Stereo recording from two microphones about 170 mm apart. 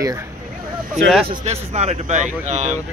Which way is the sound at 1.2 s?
40° right (ahead or behind).